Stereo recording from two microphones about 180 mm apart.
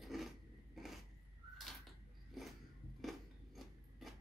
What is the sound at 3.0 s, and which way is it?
Scissors, centre (ahead or behind).